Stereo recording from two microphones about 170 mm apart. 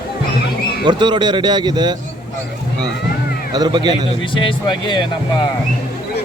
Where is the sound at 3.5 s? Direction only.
25° right (ahead or behind).